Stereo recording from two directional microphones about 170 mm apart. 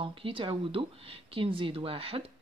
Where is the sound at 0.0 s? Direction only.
30° right (ahead or behind).